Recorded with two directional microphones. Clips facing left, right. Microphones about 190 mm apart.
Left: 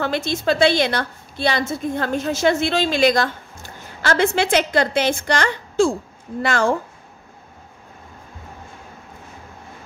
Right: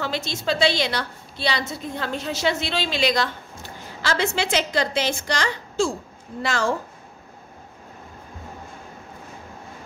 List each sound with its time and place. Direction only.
0.0 s a woman's voice: 55° left (ahead or behind)